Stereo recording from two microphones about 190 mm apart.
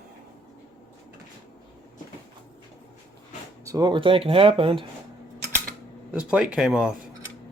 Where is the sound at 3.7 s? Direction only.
20° right (ahead or behind).